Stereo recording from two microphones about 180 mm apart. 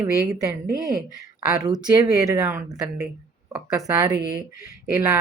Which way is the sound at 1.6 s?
20° right (ahead or behind).